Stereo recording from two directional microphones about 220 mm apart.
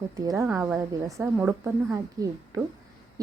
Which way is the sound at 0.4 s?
5° right (ahead or behind).